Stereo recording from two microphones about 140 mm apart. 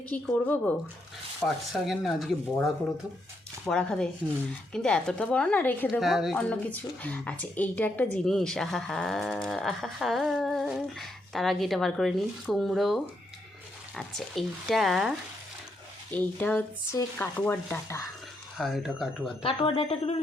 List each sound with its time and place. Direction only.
0.1 s a woman's voice: 15° left (ahead or behind)
1.5 s a woman's voice: centre (ahead or behind)
5.9 s a woman's voice: centre (ahead or behind)
6.5 s a woman's voice: 10° left (ahead or behind)
16.1 s a woman's voice: 10° left (ahead or behind)
18.5 s a woman's voice: centre (ahead or behind)
19.4 s speech: 40° left (ahead or behind)